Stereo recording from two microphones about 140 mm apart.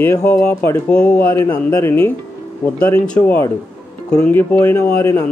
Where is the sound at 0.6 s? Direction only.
15° left (ahead or behind).